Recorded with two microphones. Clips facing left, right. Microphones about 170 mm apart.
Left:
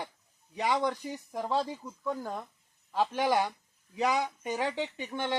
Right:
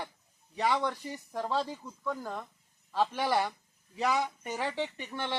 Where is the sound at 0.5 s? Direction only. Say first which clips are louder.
Left 1 dB; 15° left (ahead or behind).